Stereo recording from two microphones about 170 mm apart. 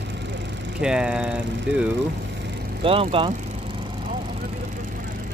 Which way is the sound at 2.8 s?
35° right (ahead or behind).